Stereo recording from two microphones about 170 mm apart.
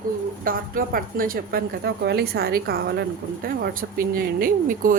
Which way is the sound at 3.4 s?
60° right (ahead or behind).